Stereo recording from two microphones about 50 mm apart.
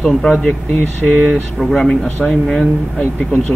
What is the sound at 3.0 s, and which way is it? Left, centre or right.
Speech, left.